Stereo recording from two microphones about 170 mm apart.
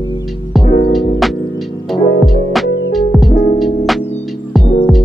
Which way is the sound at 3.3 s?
50° left (ahead or behind).